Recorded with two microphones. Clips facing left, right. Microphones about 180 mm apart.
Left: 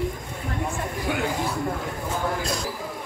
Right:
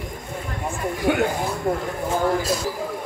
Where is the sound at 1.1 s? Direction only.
60° right (ahead or behind).